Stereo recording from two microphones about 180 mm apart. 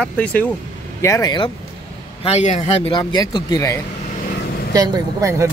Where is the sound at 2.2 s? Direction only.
40° left (ahead or behind).